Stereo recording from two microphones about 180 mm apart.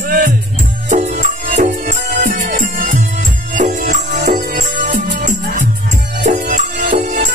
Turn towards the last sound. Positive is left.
turn(degrees=-45)  # may be behind; listen again after turning